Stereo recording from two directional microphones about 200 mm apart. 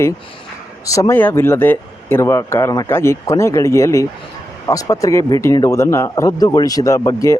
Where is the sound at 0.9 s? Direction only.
15° left (ahead or behind).